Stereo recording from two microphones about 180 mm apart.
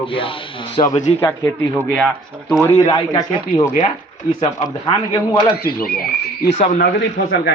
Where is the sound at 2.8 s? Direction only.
20° left (ahead or behind).